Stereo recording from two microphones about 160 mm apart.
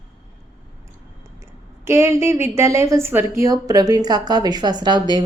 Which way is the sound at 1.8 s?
15° right (ahead or behind).